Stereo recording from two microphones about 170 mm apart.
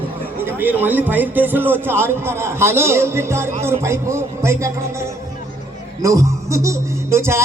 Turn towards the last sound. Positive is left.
turn(degrees=-15)  # may be behind; listen again after turning